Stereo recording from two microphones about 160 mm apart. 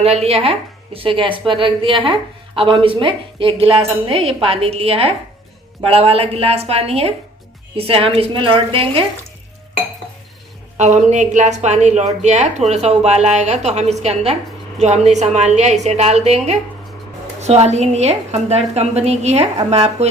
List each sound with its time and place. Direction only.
0.0 s speech: 40° right (ahead or behind)
10.8 s a woman's voice: 45° right (ahead or behind)